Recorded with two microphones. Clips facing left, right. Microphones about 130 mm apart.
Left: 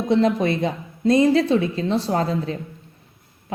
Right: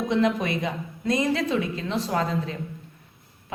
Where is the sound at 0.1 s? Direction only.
35° left (ahead or behind).